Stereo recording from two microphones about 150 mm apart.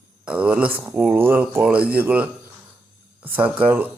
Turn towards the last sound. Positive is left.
turn(degrees=-10)  # may be behind; listen again after turning